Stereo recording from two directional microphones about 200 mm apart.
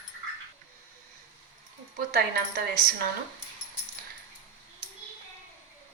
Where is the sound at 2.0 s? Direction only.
45° right (ahead or behind).